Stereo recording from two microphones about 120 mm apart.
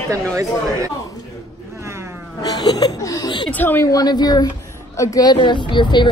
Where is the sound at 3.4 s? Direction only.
15° left (ahead or behind).